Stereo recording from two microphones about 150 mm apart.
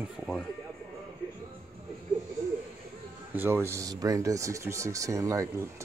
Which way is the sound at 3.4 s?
15° right (ahead or behind).